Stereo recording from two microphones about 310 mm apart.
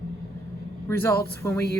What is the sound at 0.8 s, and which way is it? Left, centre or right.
Speech, centre.